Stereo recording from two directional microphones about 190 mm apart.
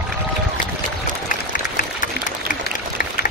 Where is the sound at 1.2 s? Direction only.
45° left (ahead or behind).